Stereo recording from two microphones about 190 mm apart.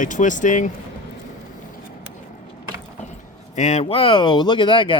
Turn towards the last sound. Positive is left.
turn(degrees=25)  # may be behind; listen again after turning